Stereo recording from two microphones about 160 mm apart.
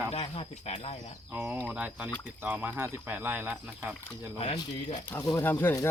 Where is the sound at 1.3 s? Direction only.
15° right (ahead or behind).